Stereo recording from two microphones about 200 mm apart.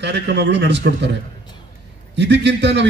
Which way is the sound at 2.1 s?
60° right (ahead or behind).